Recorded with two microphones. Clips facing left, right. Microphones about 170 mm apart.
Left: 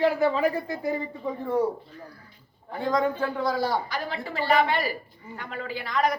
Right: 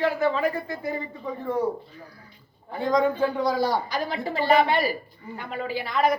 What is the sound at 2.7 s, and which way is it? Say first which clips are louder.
A man's voice: right 3 dB; 10° right (ahead or behind).